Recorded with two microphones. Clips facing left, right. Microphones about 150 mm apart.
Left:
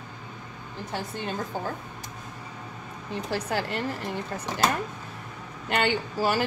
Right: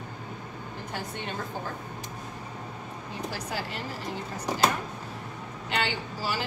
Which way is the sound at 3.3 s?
60° left (ahead or behind).